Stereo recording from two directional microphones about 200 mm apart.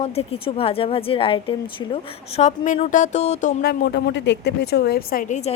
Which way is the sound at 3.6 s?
50° left (ahead or behind).